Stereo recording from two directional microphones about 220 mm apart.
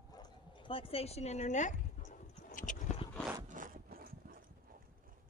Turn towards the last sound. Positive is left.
turn(degrees=-40)  # may be behind; listen again after turning